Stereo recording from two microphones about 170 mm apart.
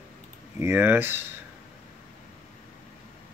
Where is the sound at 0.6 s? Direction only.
15° right (ahead or behind).